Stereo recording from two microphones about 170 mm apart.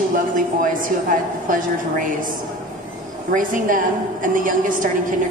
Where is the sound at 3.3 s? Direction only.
50° right (ahead or behind).